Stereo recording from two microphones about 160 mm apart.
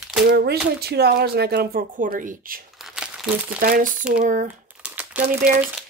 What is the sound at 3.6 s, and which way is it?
Speech, 60° right (ahead or behind).